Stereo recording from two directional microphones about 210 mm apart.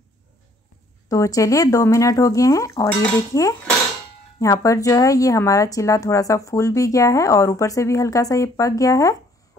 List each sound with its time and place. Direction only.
1.0 s a woman's voice: 15° left (ahead or behind)